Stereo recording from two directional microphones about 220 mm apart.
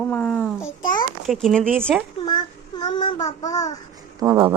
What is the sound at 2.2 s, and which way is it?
Child singing, 20° left (ahead or behind).